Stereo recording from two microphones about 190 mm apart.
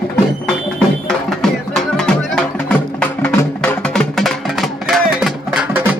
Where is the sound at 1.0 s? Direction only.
Centre (ahead or behind).